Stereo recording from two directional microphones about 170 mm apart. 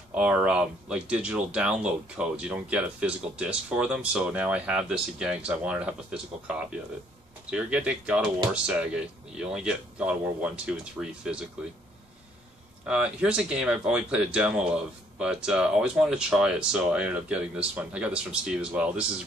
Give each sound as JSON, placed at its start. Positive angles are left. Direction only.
{"t": 0.1, "sound": "speech", "side_deg": -5}
{"t": 7.5, "sound": "speech", "side_deg": -5}
{"t": 12.8, "sound": "speech", "side_deg": -5}